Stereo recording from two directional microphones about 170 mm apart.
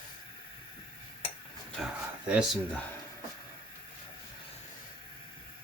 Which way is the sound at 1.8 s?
Centre (ahead or behind).